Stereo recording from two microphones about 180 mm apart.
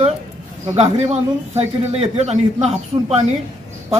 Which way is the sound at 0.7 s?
40° right (ahead or behind).